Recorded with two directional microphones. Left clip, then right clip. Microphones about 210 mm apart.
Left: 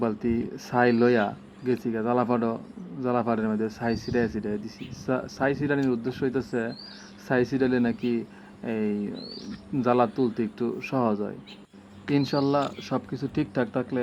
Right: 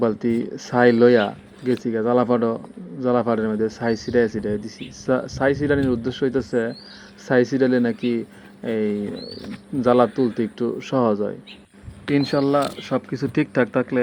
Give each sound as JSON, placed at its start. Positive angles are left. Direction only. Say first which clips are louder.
{"t": 0.0, "sound": "a man's voice", "louder": "right 6 dB", "side_deg": -15}